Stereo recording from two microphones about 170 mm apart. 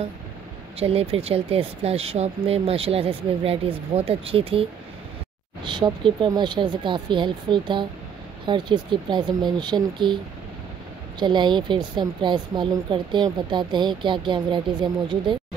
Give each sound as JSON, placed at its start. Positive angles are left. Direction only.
{"t": 0.7, "sound": "speech", "side_deg": -35}
{"t": 5.7, "sound": "speech", "side_deg": -30}
{"t": 11.1, "sound": "speech", "side_deg": -25}